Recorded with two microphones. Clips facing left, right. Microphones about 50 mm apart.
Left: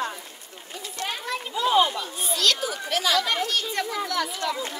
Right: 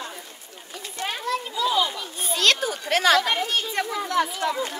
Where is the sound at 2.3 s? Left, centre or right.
Right.